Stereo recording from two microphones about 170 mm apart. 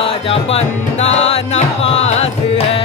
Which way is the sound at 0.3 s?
35° left (ahead or behind).